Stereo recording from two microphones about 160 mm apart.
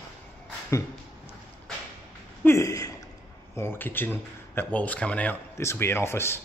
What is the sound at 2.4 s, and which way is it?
Speech, 20° left (ahead or behind).